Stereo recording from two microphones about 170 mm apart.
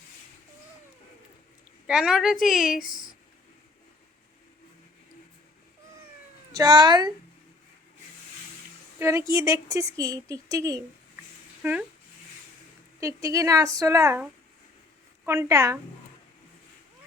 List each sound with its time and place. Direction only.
1.9 s a woman's voice: 5° right (ahead or behind)
2.8 s speech: 55° left (ahead or behind)
6.5 s speech: 25° right (ahead or behind)
9.0 s speech: 15° right (ahead or behind)
11.6 s speech: 10° right (ahead or behind)
13.0 s speech: 20° right (ahead or behind)
15.3 s speech: 20° right (ahead or behind)